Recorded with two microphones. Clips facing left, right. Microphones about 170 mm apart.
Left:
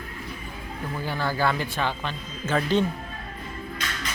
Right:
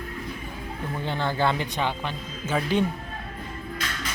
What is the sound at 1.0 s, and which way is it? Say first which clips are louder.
Speech: right 1 dB; 25° right (ahead or behind).